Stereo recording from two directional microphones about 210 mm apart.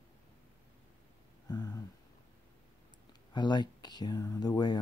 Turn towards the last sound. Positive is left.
turn(degrees=20)  # may be behind; listen again after turning